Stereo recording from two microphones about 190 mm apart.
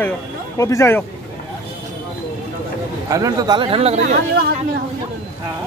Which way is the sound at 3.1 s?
15° right (ahead or behind).